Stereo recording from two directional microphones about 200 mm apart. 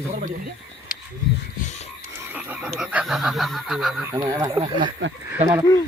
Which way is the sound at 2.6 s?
Centre (ahead or behind).